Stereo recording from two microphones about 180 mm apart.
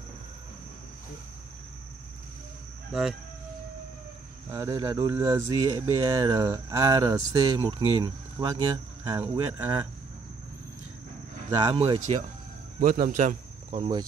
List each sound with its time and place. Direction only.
2.9 s insect: 5° right (ahead or behind)
4.5 s speech: 15° right (ahead or behind)
11.5 s speech: 30° right (ahead or behind)
12.7 s speech: 50° right (ahead or behind)